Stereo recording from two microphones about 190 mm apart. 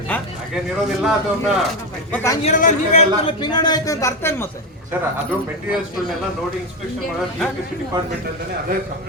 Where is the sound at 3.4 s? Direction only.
25° left (ahead or behind).